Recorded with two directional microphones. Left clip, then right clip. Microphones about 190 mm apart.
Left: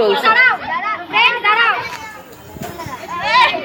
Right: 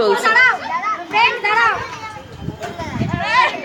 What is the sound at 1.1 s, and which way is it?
Children playing, 10° right (ahead or behind).